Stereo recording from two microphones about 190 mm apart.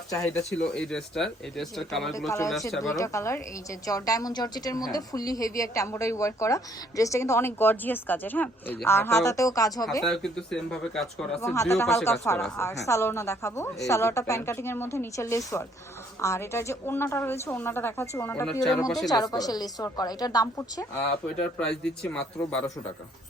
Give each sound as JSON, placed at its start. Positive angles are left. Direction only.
{"t": 0.2, "sound": "speech", "side_deg": 5}
{"t": 2.8, "sound": "a woman's voice", "side_deg": 15}
{"t": 10.0, "sound": "speech", "side_deg": 5}
{"t": 11.3, "sound": "a woman's voice", "side_deg": 15}
{"t": 21.6, "sound": "speech", "side_deg": 5}